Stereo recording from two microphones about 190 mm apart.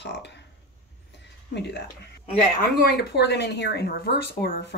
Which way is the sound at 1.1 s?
65° left (ahead or behind).